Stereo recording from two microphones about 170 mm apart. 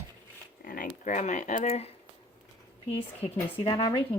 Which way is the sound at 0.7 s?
55° left (ahead or behind).